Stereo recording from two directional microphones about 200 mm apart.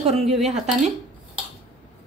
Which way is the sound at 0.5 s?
35° right (ahead or behind).